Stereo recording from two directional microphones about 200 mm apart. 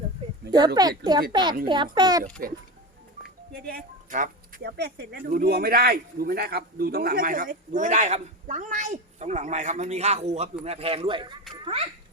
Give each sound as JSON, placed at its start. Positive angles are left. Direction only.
{"t": 0.8, "sound": "speech", "side_deg": -20}
{"t": 3.5, "sound": "speech", "side_deg": -50}